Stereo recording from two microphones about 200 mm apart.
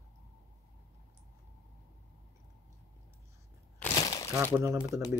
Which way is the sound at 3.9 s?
20° left (ahead or behind).